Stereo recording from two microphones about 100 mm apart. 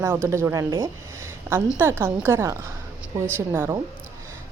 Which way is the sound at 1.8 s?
25° right (ahead or behind).